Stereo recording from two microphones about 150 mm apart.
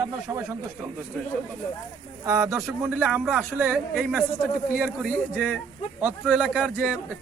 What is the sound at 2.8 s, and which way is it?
Speech, 10° right (ahead or behind).